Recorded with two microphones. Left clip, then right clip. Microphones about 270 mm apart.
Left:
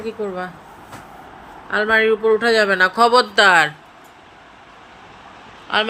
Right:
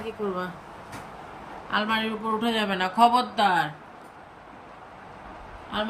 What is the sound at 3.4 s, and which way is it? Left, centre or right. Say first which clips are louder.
Speech: left 11 dB; left.